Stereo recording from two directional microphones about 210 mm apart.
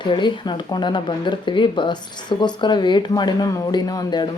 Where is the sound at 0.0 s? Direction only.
20° left (ahead or behind).